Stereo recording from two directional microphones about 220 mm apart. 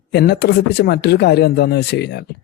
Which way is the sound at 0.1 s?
50° left (ahead or behind).